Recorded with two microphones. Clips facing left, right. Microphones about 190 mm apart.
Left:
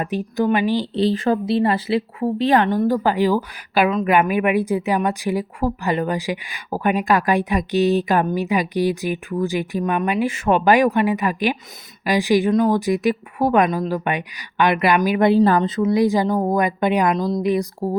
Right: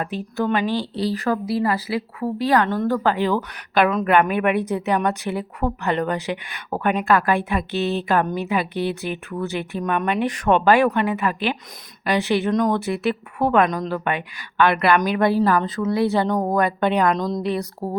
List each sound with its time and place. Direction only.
0.0 s a woman's voice: 15° left (ahead or behind)
15.3 s a woman's voice: 25° left (ahead or behind)